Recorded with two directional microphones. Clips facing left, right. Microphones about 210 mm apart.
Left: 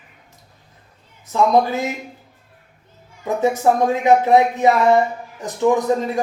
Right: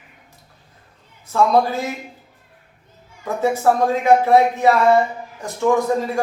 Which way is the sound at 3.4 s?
15° left (ahead or behind).